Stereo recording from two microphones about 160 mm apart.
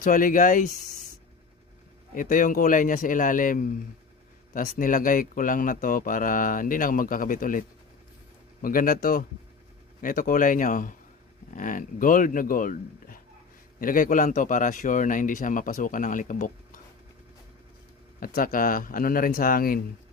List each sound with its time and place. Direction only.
0.0 s speech: 55° left (ahead or behind)
2.1 s speech: 55° left (ahead or behind)
8.6 s speech: 60° left (ahead or behind)
18.3 s speech: 60° left (ahead or behind)